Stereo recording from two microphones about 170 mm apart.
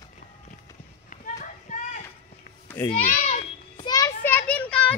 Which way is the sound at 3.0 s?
40° left (ahead or behind).